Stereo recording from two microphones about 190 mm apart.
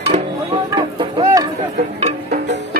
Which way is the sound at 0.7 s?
20° right (ahead or behind).